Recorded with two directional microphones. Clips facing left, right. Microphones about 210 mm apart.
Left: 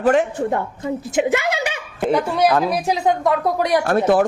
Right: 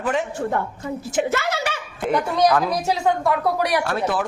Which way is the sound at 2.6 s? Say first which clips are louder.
Left 2 dB; 15° left (ahead or behind).